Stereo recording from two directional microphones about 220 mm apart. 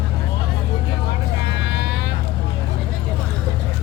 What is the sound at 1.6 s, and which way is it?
Vehicle, 50° left (ahead or behind).